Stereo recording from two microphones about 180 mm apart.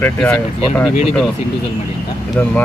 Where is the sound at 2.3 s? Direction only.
5° left (ahead or behind).